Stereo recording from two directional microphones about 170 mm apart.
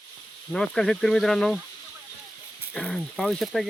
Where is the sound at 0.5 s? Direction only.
5° left (ahead or behind).